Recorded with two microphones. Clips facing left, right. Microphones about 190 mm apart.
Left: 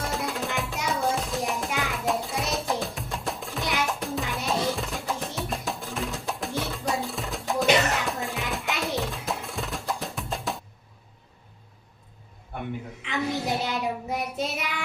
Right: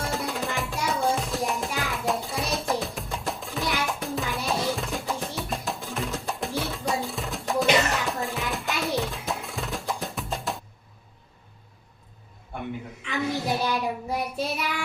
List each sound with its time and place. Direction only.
0.0 s music: centre (ahead or behind)
13.6 s child singing: 20° left (ahead or behind)